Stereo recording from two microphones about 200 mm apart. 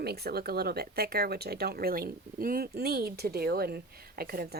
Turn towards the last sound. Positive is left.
turn(degrees=-50)  # may be behind; listen again after turning